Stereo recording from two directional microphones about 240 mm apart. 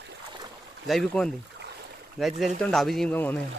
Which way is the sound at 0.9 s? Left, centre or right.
Centre.